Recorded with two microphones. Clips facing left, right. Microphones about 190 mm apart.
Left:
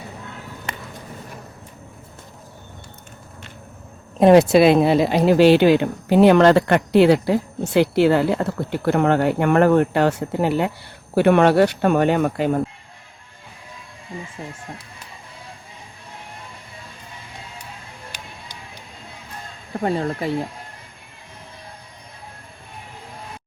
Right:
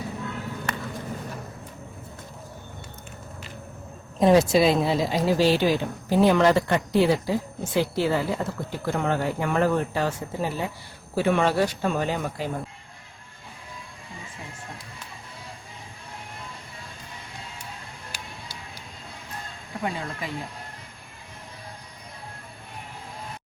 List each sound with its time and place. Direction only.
4.2 s speech: 65° left (ahead or behind)
19.8 s speech: 45° left (ahead or behind)